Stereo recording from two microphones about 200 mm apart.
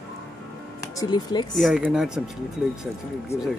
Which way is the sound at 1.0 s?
20° left (ahead or behind).